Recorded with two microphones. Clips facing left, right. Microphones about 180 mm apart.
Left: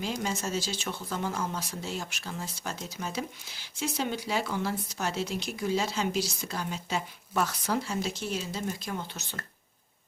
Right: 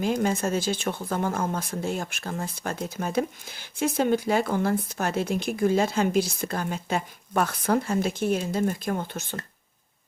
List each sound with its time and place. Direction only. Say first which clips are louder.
0.0 s speech: right 8 dB; 55° right (ahead or behind)